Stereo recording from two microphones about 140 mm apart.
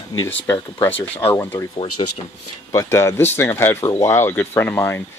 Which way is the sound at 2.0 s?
40° left (ahead or behind).